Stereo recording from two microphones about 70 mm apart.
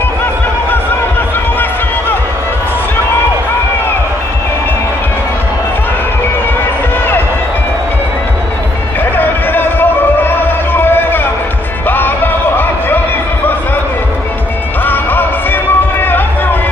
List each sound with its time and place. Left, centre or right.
9.1 s music: left
14.9 s music: left